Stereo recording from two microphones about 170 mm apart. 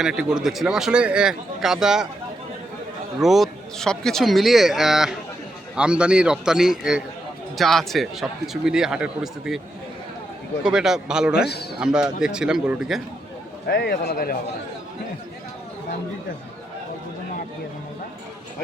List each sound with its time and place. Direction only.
0.0 s speech: 5° right (ahead or behind)
3.2 s speech: centre (ahead or behind)
10.6 s speech: 5° right (ahead or behind)
11.4 s a man's voice: 75° left (ahead or behind)
11.9 s speech: 5° right (ahead or behind)
13.7 s a man's voice: 70° left (ahead or behind)